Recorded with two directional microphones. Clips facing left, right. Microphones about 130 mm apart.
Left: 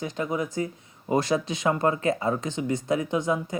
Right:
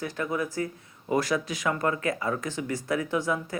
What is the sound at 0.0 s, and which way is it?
Speech, 20° left (ahead or behind).